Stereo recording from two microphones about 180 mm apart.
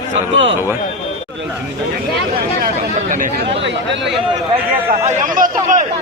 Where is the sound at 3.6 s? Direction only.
80° right.